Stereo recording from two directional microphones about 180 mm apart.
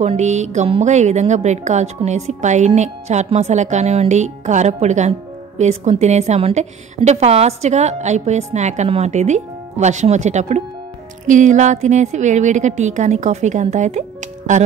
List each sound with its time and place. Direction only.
0.0 s a woman's voice: 40° right (ahead or behind)